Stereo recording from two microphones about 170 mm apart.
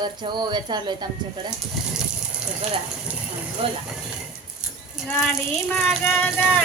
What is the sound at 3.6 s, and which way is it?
Speech, 30° right (ahead or behind).